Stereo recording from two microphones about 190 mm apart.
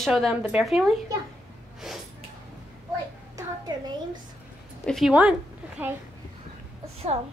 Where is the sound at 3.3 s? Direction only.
20° right (ahead or behind).